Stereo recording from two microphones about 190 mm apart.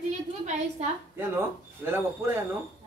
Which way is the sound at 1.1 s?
10° right (ahead or behind).